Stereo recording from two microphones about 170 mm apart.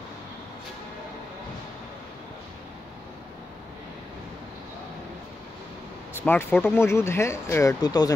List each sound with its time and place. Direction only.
6.1 s speech: 10° left (ahead or behind)